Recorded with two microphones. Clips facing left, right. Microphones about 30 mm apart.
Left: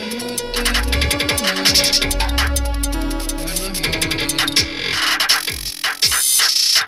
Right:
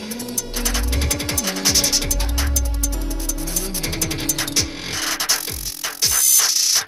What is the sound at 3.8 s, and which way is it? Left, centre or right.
Music, left.